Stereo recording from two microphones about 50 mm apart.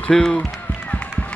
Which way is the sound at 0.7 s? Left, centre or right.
Left.